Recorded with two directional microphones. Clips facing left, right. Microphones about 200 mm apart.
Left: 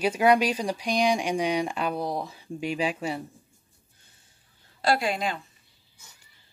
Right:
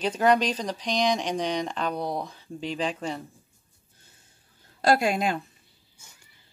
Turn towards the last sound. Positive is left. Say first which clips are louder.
# right 3 dB
turn(degrees=-45)  # may be behind; listen again after turning